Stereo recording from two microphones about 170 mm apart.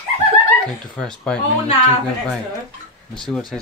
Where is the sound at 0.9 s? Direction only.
5° left (ahead or behind).